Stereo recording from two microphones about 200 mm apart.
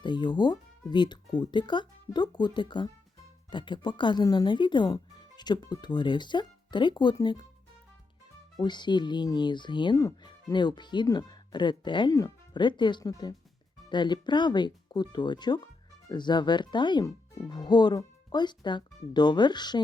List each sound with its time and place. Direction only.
0.0 s speech: 20° left (ahead or behind)
8.5 s speech: 20° left (ahead or behind)